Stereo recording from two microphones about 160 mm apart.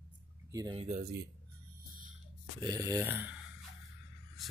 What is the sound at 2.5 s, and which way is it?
Speech, 25° right (ahead or behind).